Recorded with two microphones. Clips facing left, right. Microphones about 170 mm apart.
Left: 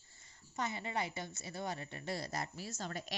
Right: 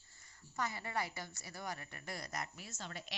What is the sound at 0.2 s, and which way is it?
A woman's voice, 20° left (ahead or behind).